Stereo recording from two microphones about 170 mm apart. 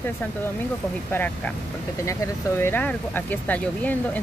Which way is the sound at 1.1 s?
10° left (ahead or behind).